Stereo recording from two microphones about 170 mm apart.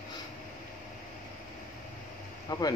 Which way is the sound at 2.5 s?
20° left (ahead or behind).